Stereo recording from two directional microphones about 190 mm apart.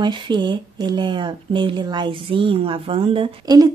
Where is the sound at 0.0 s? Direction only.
25° right (ahead or behind).